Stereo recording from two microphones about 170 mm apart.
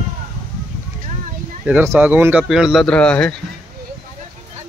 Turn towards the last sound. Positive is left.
turn(degrees=5)  # may be behind; listen again after turning